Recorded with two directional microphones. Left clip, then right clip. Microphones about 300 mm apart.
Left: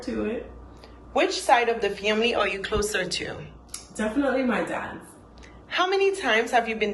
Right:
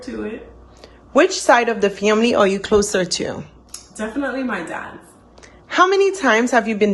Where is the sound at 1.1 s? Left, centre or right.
Right.